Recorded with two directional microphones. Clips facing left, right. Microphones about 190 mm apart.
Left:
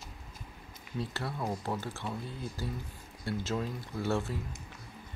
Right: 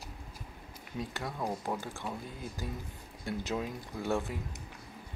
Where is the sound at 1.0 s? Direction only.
15° right (ahead or behind).